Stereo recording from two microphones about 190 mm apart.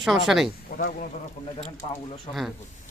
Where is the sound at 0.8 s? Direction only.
45° left (ahead or behind).